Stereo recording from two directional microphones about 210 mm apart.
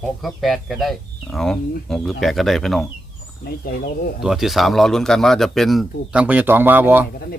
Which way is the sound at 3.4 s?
45° left (ahead or behind).